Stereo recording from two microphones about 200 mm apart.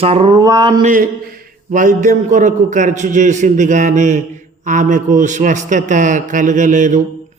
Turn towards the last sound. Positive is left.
turn(degrees=-40)  # may be behind; listen again after turning